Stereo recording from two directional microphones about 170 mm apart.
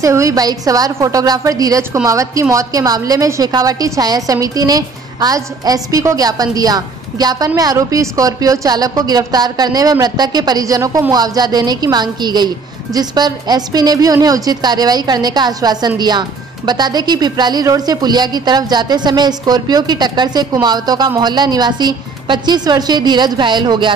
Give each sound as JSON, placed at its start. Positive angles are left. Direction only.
{"t": 0.0, "sound": "a woman's voice", "side_deg": -20}